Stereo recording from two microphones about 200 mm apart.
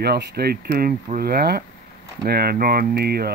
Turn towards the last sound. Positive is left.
turn(degrees=-50)  # may be behind; listen again after turning